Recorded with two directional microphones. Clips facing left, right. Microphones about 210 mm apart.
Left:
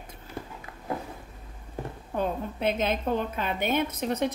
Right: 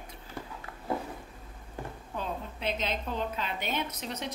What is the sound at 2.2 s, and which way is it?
A woman's voice, 50° left (ahead or behind).